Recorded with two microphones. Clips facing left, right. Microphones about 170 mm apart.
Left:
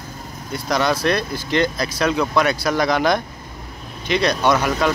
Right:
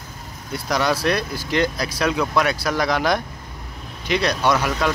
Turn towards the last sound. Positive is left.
turn(degrees=0)  # may be behind; listen again after turning